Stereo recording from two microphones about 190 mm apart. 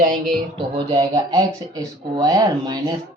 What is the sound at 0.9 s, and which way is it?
Speech, 20° right (ahead or behind).